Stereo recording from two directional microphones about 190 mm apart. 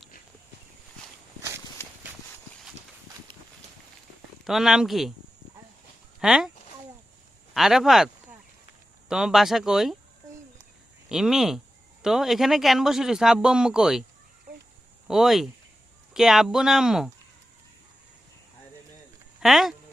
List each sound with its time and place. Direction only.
1.4 s walk: 15° right (ahead or behind)
4.4 s speech: centre (ahead or behind)
6.1 s speech: 5° right (ahead or behind)
7.5 s speech: centre (ahead or behind)
11.1 s speech: centre (ahead or behind)
15.0 s speech: centre (ahead or behind)
19.4 s speech: centre (ahead or behind)